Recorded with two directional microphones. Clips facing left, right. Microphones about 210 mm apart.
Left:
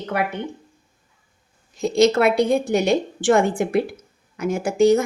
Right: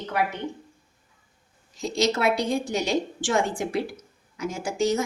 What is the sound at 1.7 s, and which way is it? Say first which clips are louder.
A woman's voice: left 8 dB; 55° left (ahead or behind).